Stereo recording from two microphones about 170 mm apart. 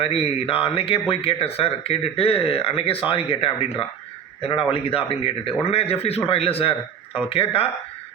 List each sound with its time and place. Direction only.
0.0 s speech: 35° left (ahead or behind)